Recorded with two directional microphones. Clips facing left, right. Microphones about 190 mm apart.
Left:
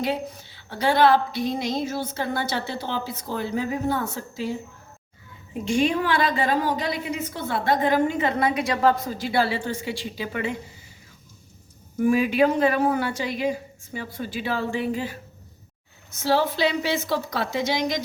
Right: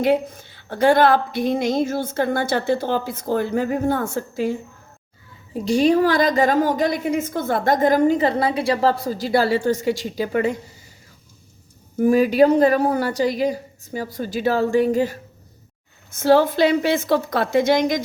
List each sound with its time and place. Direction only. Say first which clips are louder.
0.0 s a woman's voice: right 8 dB; 50° right (ahead or behind)
5.5 s a woman's voice: right 6 dB; 35° right (ahead or behind)
11.9 s a woman's voice: right 5 dB; 40° right (ahead or behind)
16.1 s a woman's voice: right 7 dB; 50° right (ahead or behind)